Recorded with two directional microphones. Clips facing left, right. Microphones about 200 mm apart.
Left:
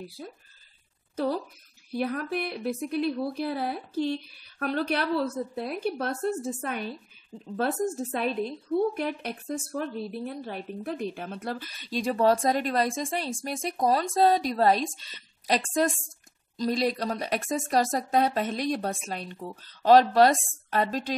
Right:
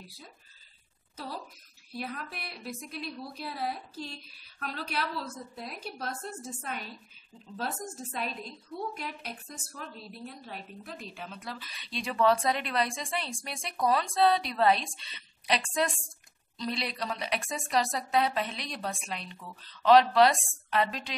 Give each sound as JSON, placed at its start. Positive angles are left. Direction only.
{"t": 1.1, "sound": "a woman's voice", "side_deg": 45}
{"t": 8.1, "sound": "a woman's voice", "side_deg": 55}